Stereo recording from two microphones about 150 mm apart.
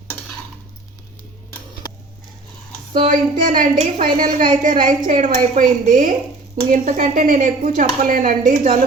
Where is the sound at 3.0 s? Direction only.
60° right (ahead or behind).